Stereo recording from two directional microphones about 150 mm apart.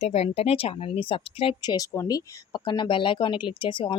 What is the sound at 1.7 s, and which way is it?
Speech, 25° left (ahead or behind).